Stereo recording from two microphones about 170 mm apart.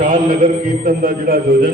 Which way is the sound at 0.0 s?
50° right (ahead or behind).